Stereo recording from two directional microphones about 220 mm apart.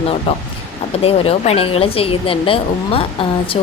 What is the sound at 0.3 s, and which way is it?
A woman's voice, 25° left (ahead or behind).